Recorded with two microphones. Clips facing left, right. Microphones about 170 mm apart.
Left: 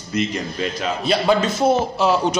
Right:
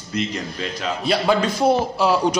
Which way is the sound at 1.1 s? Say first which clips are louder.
Left 1 dB; 20° left (ahead or behind).